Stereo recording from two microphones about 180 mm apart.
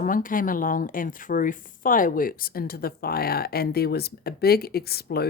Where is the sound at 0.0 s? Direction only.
50° left (ahead or behind).